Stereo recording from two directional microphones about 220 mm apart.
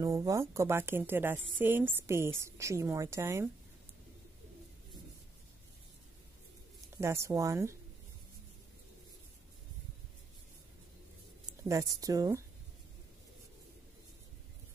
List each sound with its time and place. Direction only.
0.0 s a woman's voice: 15° right (ahead or behind)
7.0 s a woman's voice: 15° right (ahead or behind)
11.6 s a woman's voice: 15° right (ahead or behind)